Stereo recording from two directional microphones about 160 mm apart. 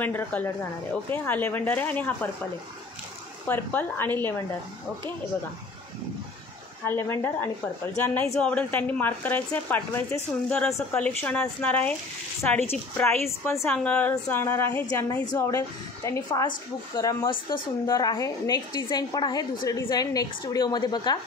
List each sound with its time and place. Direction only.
0.0 s speech: 10° left (ahead or behind)
3.4 s speech: 10° left (ahead or behind)
6.8 s a woman's voice: 15° left (ahead or behind)